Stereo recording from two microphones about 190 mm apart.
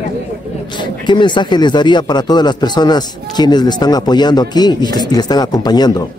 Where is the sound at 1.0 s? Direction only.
25° left (ahead or behind).